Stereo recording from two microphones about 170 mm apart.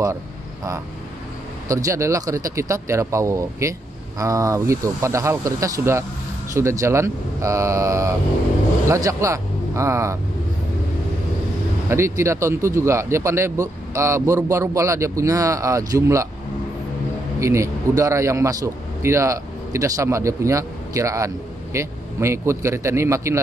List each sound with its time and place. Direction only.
1.7 s speech: 20° right (ahead or behind)
11.9 s speech: 15° right (ahead or behind)
17.4 s a man's voice: 15° right (ahead or behind)